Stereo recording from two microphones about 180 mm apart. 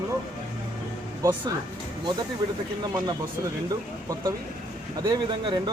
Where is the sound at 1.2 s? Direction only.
25° right (ahead or behind).